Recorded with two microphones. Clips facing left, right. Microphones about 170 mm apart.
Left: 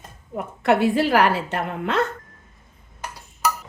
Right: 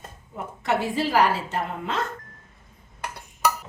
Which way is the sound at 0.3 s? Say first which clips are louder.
Left 6 dB; 65° left (ahead or behind).